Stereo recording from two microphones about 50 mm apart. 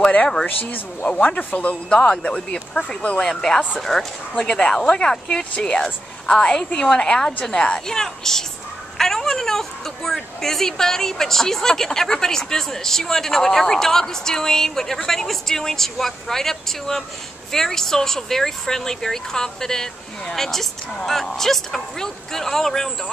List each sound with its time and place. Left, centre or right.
1.0 s a woman's voice: left; by 22.9 s centre